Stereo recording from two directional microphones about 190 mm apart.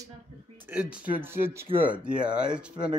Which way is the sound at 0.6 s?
10° right (ahead or behind).